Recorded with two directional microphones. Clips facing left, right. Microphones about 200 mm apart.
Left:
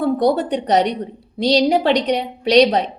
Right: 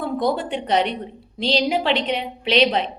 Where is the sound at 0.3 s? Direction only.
40° left (ahead or behind).